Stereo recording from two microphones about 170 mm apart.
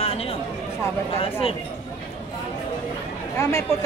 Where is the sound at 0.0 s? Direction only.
35° left (ahead or behind).